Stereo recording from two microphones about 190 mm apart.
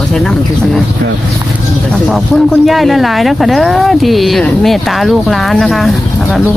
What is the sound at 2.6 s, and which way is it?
Speech, centre (ahead or behind).